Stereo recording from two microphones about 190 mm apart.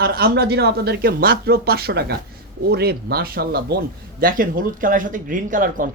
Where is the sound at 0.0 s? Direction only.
55° right (ahead or behind).